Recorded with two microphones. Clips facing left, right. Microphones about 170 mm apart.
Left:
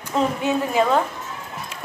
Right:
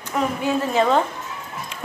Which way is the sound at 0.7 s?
10° left (ahead or behind).